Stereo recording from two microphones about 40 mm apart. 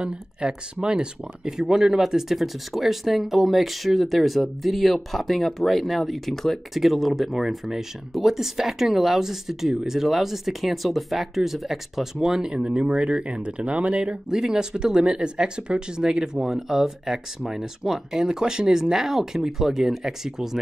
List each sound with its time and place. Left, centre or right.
0.0 s speech: centre
14.3 s speech: centre